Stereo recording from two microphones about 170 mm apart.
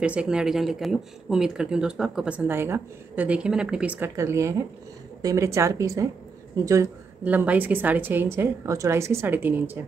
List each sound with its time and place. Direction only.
0.0 s a woman's voice: 5° right (ahead or behind)